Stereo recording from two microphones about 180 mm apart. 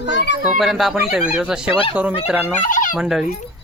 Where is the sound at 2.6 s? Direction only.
45° left (ahead or behind).